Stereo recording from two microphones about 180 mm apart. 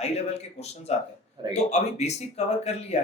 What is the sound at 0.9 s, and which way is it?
Speech, 40° left (ahead or behind).